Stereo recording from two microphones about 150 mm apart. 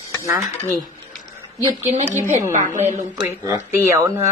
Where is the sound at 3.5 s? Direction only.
20° right (ahead or behind).